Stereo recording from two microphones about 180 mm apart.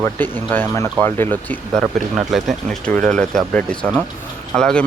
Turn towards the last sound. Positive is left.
turn(degrees=5)  # may be behind; listen again after turning